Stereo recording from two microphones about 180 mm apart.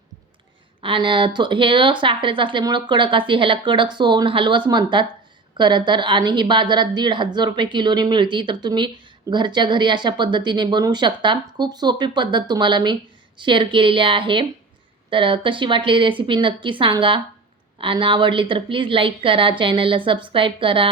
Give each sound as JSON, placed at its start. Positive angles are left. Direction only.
{"t": 0.8, "sound": "speech", "side_deg": -25}